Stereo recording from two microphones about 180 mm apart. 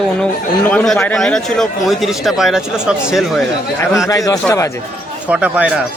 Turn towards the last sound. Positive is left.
turn(degrees=-5)  # may be behind; listen again after turning